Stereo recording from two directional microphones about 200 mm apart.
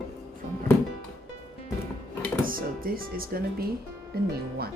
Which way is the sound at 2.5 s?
45° right (ahead or behind).